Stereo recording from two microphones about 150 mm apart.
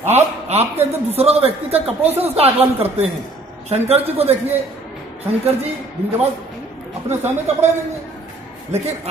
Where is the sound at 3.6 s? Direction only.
45° right (ahead or behind).